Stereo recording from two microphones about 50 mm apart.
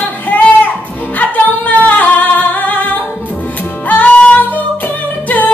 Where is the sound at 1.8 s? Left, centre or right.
Left.